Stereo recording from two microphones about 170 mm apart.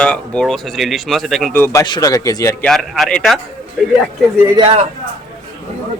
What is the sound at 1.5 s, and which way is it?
A man's voice, 15° left (ahead or behind).